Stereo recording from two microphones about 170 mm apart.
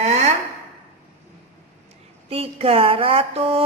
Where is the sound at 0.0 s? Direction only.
40° right (ahead or behind).